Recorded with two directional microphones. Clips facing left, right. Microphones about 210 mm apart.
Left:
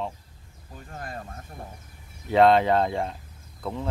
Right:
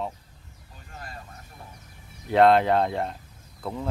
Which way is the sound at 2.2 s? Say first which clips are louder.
Even; centre (ahead or behind).